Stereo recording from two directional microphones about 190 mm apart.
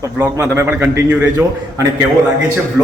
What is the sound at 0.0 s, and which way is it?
A man's voice, 15° right (ahead or behind).